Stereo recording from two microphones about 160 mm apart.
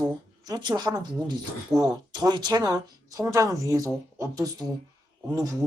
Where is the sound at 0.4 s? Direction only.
25° right (ahead or behind).